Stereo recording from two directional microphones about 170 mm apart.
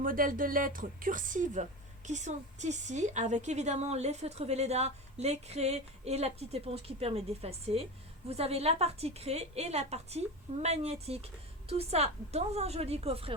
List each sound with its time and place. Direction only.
0.0 s a woman's voice: 55° right (ahead or behind); by 13.3 s 35° right (ahead or behind)